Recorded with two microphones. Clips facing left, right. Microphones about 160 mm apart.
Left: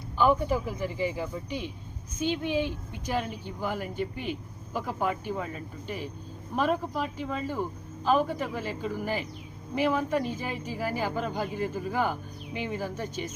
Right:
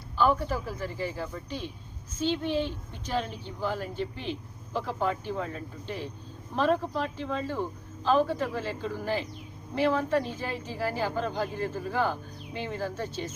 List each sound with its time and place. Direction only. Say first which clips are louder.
0.2 s speech: left 2 dB; 15° left (ahead or behind)